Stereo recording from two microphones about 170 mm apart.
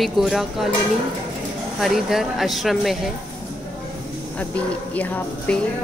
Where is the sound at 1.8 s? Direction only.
Centre (ahead or behind).